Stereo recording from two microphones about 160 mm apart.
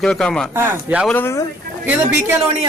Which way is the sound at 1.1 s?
15° left (ahead or behind).